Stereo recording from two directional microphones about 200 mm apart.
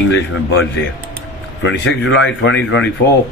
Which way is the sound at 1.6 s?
65° left (ahead or behind).